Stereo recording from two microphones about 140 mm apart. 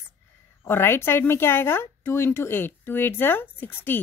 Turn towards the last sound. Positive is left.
turn(degrees=15)  # may be behind; listen again after turning